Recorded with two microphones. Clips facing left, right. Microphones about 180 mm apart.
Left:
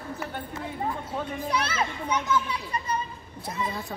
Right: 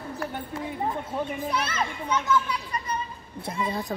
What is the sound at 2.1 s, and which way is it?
Speech, 20° left (ahead or behind).